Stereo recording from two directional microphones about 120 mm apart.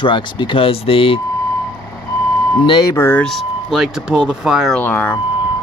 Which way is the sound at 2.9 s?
20° left (ahead or behind).